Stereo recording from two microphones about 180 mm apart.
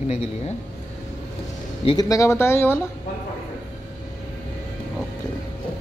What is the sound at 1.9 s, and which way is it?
Speech, 20° left (ahead or behind).